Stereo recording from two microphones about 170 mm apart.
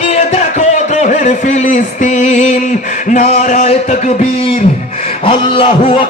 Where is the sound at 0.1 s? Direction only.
40° left (ahead or behind).